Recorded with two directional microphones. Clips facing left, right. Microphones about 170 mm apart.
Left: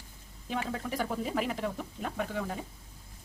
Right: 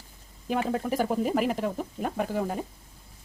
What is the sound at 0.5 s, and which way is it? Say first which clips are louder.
Speech: right 6 dB; 45° right (ahead or behind).